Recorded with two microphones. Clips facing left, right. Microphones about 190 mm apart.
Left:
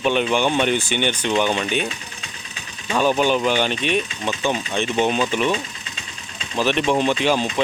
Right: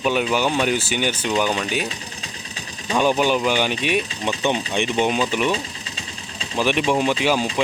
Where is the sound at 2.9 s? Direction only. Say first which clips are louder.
Even; 10° right (ahead or behind).